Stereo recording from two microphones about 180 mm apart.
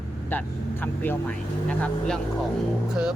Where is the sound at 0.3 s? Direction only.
10° left (ahead or behind).